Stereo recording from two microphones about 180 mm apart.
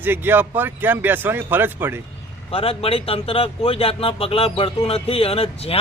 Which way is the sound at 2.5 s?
30° left (ahead or behind).